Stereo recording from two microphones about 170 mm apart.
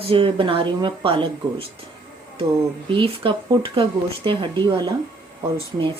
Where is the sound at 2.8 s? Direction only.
30° right (ahead or behind).